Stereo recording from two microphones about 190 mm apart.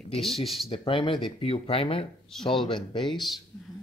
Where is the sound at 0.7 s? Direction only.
25° left (ahead or behind).